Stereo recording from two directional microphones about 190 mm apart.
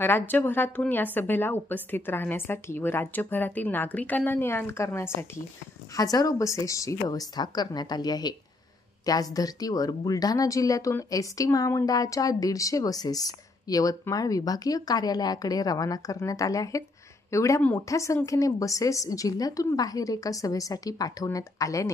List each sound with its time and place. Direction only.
0.0 s a woman's voice: 10° left (ahead or behind)